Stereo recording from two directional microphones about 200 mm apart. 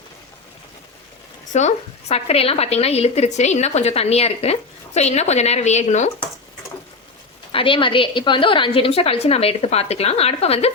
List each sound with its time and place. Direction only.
1.5 s a woman's voice: 35° left (ahead or behind)
7.5 s a woman's voice: 25° left (ahead or behind)